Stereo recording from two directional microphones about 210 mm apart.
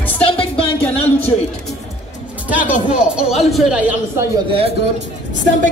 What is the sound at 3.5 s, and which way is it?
Speech, centre (ahead or behind).